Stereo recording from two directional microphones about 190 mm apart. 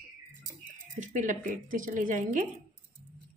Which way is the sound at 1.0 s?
40° right (ahead or behind).